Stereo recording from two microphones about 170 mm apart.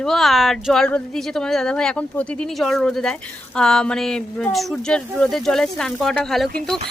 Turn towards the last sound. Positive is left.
turn(degrees=0)  # may be behind; listen again after turning